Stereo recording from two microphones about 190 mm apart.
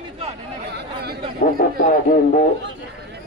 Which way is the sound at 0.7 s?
55° right (ahead or behind).